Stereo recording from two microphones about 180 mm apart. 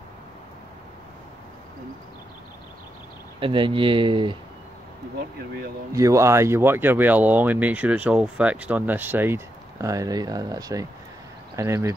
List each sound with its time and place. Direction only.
3.3 s speech: 30° right (ahead or behind)
5.9 s speech: 15° right (ahead or behind)